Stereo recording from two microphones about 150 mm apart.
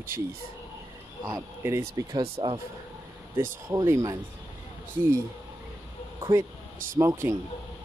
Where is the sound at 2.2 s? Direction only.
35° right (ahead or behind).